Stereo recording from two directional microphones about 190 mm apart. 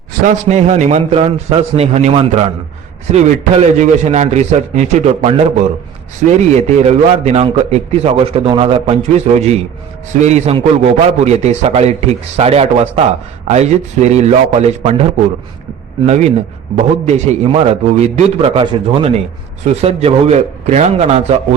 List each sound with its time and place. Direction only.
0.1 s a man's voice: 40° right (ahead or behind)
16.0 s a man's voice: 35° right (ahead or behind)